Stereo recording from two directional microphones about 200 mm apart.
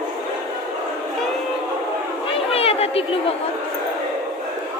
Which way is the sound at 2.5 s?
30° left (ahead or behind).